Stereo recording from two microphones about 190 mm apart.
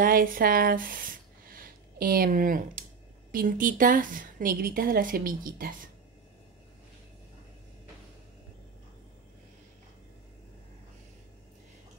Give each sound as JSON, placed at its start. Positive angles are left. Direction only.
{"t": 0.0, "sound": "a woman's voice", "side_deg": -45}